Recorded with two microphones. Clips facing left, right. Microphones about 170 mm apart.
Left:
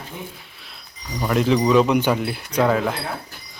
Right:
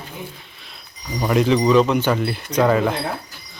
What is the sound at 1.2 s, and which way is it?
Speech, 5° right (ahead or behind).